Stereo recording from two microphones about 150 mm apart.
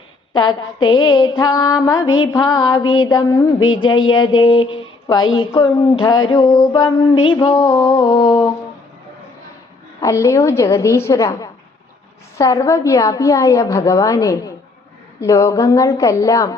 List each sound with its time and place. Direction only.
0.3 s mantra: 30° left (ahead or behind)
10.0 s a woman's voice: 20° left (ahead or behind)